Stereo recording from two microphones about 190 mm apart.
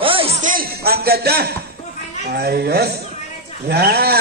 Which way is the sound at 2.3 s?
55° right (ahead or behind).